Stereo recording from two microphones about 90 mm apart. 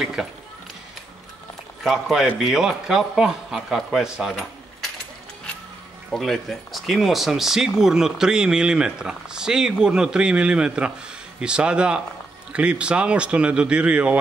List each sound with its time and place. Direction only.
0.0 s a man's voice: 5° right (ahead or behind)
1.8 s a man's voice: 5° right (ahead or behind)
6.1 s speech: 5° left (ahead or behind); by 14.1 s 15° right (ahead or behind)